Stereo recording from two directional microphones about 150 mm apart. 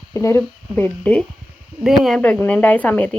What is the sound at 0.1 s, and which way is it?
Speech, 20° left (ahead or behind).